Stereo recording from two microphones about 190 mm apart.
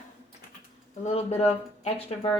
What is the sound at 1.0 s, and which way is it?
Speech, 35° left (ahead or behind).